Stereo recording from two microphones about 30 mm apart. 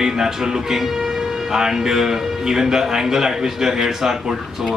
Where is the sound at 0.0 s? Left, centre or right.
Centre.